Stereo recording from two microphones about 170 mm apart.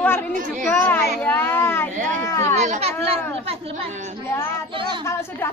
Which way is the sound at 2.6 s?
40° right (ahead or behind).